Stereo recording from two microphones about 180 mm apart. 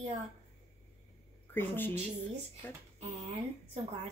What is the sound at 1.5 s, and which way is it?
Speech, 10° left (ahead or behind).